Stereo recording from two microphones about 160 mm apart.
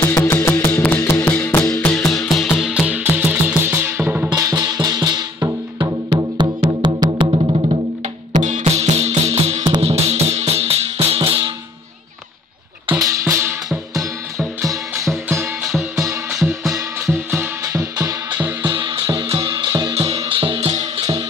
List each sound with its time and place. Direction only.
0.0 s music: 15° left (ahead or behind); by 7.8 s 35° right (ahead or behind)
8.3 s music: 50° right (ahead or behind)
13.0 s music: 20° right (ahead or behind)
14.6 s music: 20° right (ahead or behind)
15.6 s music: centre (ahead or behind)
18.8 s music: 30° right (ahead or behind)
19.2 s music: 35° right (ahead or behind)
19.5 s music: 25° right (ahead or behind)